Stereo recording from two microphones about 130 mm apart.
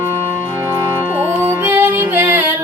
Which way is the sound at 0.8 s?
15° right (ahead or behind).